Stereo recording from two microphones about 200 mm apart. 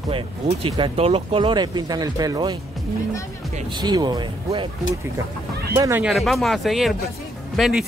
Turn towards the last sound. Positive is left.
turn(degrees=0)  # may be behind; listen again after turning